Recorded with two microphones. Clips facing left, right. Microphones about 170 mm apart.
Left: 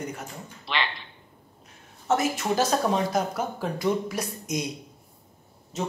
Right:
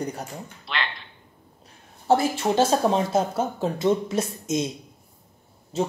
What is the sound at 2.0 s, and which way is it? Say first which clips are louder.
Speech: right 4 dB; 30° right (ahead or behind).